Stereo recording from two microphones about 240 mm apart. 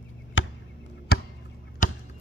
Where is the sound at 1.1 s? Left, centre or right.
Left.